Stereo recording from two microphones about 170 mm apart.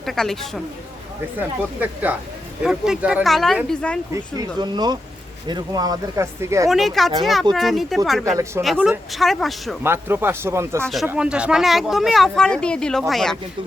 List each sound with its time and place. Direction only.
0.0 s speech: centre (ahead or behind)
1.4 s speech: 10° right (ahead or behind)
4.1 s speech: 25° right (ahead or behind)
6.7 s speech: centre (ahead or behind)
9.8 s speech: 15° right (ahead or behind)
10.8 s speech: centre (ahead or behind)